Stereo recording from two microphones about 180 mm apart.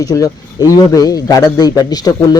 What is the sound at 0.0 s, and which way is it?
A man's voice, 20° left (ahead or behind).